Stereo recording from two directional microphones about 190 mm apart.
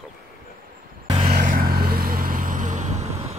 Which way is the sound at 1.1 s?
30° right (ahead or behind).